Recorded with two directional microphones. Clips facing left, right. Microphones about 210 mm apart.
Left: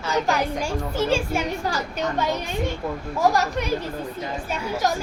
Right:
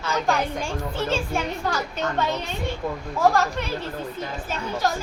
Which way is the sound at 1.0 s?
10° left (ahead or behind).